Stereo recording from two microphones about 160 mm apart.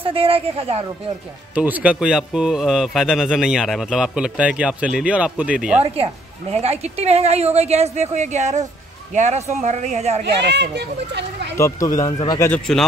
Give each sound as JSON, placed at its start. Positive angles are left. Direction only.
{"t": 0.0, "sound": "speech", "side_deg": -35}
{"t": 1.5, "sound": "speech", "side_deg": -10}
{"t": 6.5, "sound": "speech", "side_deg": -40}
{"t": 10.2, "sound": "speech", "side_deg": -90}
{"t": 11.5, "sound": "speech", "side_deg": 20}
{"t": 12.4, "sound": "speech", "side_deg": 10}